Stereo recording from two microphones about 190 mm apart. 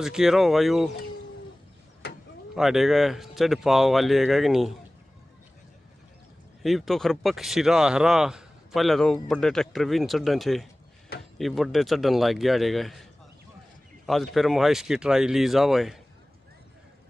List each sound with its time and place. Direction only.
0.0 s speech: centre (ahead or behind)
2.0 s mechanisms: 60° left (ahead or behind)
2.5 s speech: centre (ahead or behind)
6.6 s speech: centre (ahead or behind)
14.0 s speech: centre (ahead or behind)